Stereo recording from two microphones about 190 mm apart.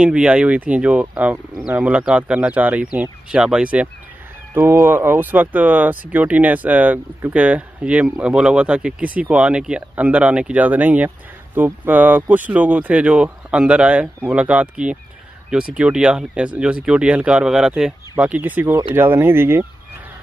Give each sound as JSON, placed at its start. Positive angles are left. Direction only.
{"t": 0.0, "sound": "speech", "side_deg": -5}